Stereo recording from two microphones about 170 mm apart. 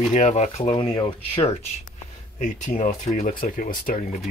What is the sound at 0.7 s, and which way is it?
Speech, 30° left (ahead or behind).